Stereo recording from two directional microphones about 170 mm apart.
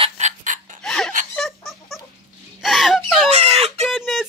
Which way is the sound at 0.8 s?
5° left (ahead or behind).